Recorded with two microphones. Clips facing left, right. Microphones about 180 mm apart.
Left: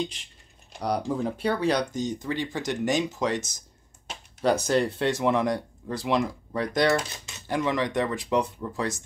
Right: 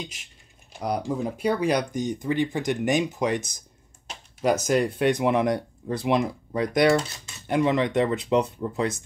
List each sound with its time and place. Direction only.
0.0 s speech: 5° right (ahead or behind)
4.6 s speech: 10° right (ahead or behind)